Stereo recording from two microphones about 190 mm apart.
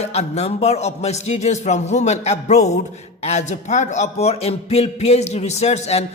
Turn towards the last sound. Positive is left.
turn(degrees=35)  # may be behind; listen again after turning